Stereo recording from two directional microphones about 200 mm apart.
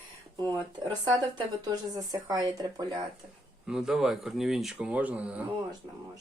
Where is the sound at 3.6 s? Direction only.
5° right (ahead or behind).